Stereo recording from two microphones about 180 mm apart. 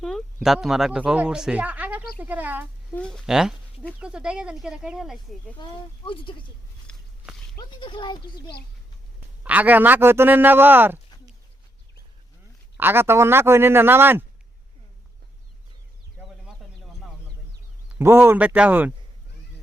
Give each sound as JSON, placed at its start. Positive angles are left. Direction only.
{"t": 0.3, "sound": "speech", "side_deg": 0}
{"t": 2.9, "sound": "speech", "side_deg": 5}
{"t": 5.6, "sound": "speech", "side_deg": 25}
{"t": 6.8, "sound": "a sound", "side_deg": 5}
{"t": 7.5, "sound": "speech", "side_deg": 25}
{"t": 9.4, "sound": "a man's voice", "side_deg": -10}
{"t": 12.7, "sound": "a man's voice", "side_deg": -10}
{"t": 18.0, "sound": "a man's voice", "side_deg": -15}